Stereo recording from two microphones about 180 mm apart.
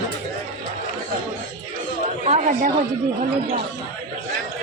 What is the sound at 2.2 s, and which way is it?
Chatter, 40° right (ahead or behind).